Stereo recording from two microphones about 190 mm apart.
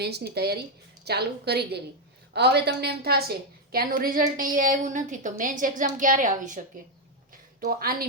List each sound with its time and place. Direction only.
0.0 s a woman's voice: 60° right (ahead or behind)